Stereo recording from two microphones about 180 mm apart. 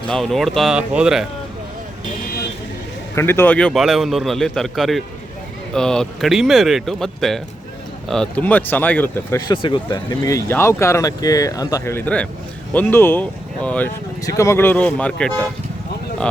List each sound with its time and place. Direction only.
0.1 s a man's voice: centre (ahead or behind)
3.2 s a man's voice: 15° left (ahead or behind)
9.5 s speech: 25° left (ahead or behind); by 13.9 s 5° left (ahead or behind)
14.2 s speech: 20° left (ahead or behind)